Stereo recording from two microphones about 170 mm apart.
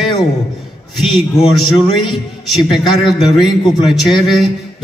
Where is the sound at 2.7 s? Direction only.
Centre (ahead or behind).